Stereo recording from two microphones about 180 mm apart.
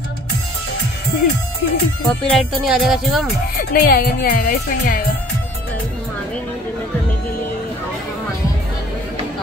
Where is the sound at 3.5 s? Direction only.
55° left (ahead or behind).